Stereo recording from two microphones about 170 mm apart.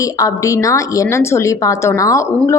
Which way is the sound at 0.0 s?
20° left (ahead or behind).